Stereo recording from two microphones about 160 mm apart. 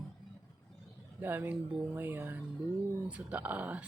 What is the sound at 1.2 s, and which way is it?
Speech, 15° right (ahead or behind).